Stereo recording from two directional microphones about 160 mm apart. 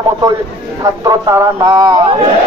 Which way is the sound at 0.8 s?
20° right (ahead or behind).